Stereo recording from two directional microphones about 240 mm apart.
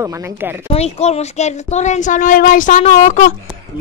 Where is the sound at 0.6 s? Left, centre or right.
Left.